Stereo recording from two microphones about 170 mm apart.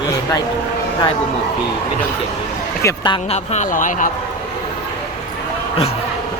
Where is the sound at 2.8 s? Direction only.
25° left (ahead or behind).